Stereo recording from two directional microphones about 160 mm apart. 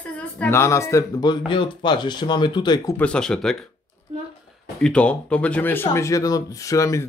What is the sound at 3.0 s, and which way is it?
Speech, 5° left (ahead or behind).